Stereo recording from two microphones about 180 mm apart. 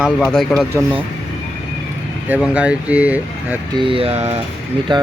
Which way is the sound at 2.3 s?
5° right (ahead or behind).